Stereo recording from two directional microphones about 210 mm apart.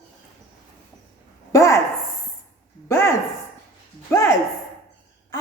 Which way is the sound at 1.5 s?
15° left (ahead or behind).